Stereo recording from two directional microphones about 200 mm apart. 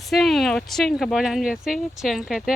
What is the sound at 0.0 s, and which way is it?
Speech, centre (ahead or behind).